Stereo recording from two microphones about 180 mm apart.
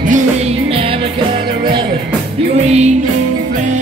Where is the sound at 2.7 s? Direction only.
40° right (ahead or behind).